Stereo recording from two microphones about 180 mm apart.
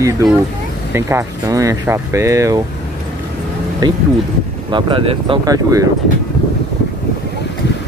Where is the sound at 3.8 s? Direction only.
25° right (ahead or behind).